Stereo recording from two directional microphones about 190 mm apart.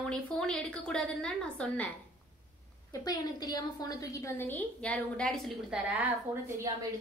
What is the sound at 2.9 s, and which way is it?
A woman's voice, 20° left (ahead or behind).